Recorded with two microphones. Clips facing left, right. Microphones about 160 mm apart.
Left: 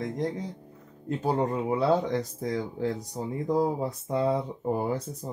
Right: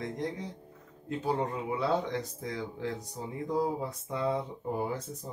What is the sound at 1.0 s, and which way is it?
Speech, 40° left (ahead or behind).